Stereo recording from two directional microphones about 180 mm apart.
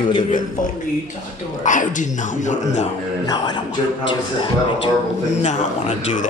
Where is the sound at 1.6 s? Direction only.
45° left (ahead or behind).